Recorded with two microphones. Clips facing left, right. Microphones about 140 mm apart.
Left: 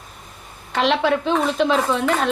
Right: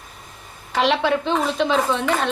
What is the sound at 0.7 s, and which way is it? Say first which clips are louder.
A woman's voice: even; centre (ahead or behind).